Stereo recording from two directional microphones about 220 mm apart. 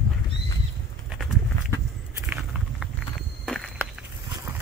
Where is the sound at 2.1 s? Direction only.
5° right (ahead or behind).